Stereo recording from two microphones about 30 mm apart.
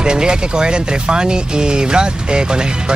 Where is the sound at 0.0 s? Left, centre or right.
Right.